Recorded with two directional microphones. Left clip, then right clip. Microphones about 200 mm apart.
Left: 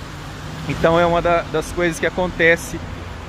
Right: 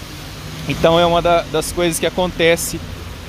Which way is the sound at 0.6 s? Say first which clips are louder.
Right 2 dB; 15° right (ahead or behind).